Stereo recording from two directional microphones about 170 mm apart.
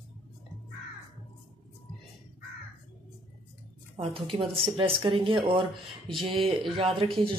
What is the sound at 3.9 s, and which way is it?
Speech, 35° right (ahead or behind).